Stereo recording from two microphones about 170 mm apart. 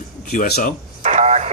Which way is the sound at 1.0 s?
40° right (ahead or behind).